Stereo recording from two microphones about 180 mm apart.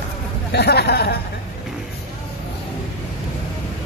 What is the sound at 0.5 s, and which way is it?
Speech, 65° left (ahead or behind).